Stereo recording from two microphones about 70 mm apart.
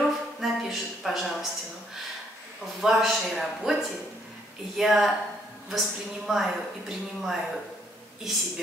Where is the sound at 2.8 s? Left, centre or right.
Centre.